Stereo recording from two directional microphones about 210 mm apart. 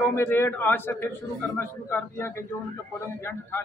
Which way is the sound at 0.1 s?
10° left (ahead or behind).